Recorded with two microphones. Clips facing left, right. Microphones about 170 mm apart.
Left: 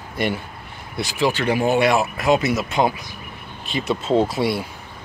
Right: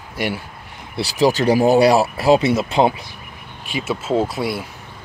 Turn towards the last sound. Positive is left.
turn(degrees=0)  # may be behind; listen again after turning